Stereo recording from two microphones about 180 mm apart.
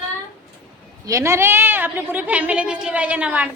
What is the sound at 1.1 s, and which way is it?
A woman's voice, 15° right (ahead or behind).